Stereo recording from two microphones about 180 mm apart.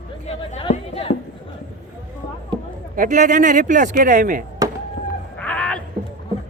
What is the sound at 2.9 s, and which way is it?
Speech, 45° right (ahead or behind).